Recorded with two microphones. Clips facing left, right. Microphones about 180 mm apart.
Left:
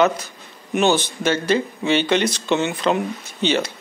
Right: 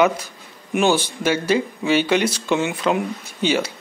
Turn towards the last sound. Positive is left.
turn(degrees=-10)  # may be behind; listen again after turning